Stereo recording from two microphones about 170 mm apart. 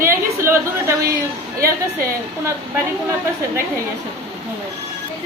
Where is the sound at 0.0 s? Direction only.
15° right (ahead or behind).